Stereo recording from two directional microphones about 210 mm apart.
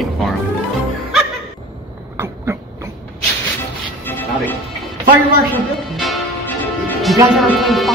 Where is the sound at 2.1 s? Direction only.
10° right (ahead or behind).